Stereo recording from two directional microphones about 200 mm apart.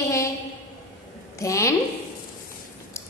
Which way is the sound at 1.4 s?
15° left (ahead or behind).